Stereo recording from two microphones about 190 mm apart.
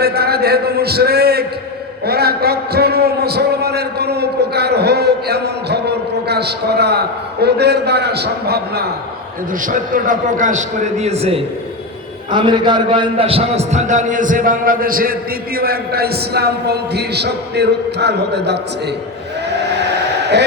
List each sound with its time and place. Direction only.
0.0 s a man's voice: 55° right (ahead or behind)
9.5 s a man's voice: 45° right (ahead or behind); by 18.6 s 60° right (ahead or behind)
19.5 s vehicle: 65° right (ahead or behind)